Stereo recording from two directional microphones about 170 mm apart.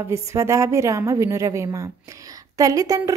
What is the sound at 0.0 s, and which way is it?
A woman's voice, 15° right (ahead or behind).